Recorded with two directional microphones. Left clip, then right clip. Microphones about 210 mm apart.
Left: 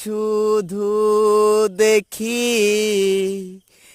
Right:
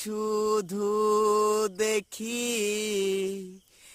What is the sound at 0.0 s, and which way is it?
Mantra, 30° left (ahead or behind).